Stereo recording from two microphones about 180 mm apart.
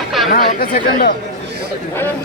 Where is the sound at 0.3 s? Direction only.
55° left (ahead or behind).